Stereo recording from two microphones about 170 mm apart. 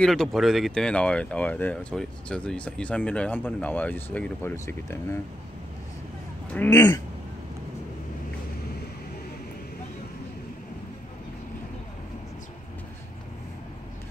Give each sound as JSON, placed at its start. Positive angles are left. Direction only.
{"t": 0.0, "sound": "speech", "side_deg": 0}
{"t": 6.7, "sound": "speech", "side_deg": 20}